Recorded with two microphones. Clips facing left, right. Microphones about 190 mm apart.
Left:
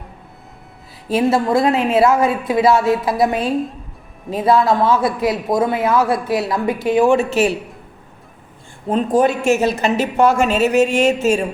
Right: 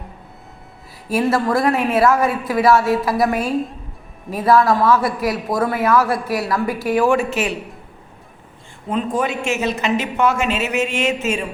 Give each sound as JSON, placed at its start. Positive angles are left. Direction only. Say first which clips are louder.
{"t": 1.0, "sound": "speech", "louder": "left 2 dB", "side_deg": 25}
{"t": 8.9, "sound": "a woman's voice", "louder": "left 5 dB", "side_deg": 35}